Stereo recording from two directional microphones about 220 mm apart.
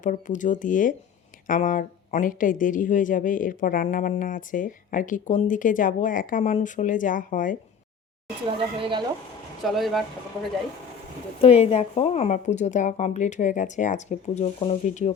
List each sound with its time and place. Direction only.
0.0 s speech: 35° left (ahead or behind)
8.4 s a woman's voice: 20° right (ahead or behind)
9.6 s speech: centre (ahead or behind)
11.3 s speech: 25° left (ahead or behind)